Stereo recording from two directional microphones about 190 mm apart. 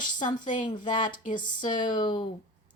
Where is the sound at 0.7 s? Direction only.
25° left (ahead or behind).